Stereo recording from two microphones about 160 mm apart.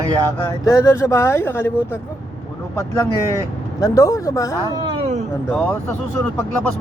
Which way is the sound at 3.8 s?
20° left (ahead or behind).